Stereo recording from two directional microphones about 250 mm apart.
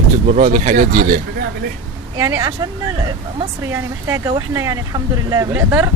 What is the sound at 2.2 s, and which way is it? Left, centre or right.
Speech, centre.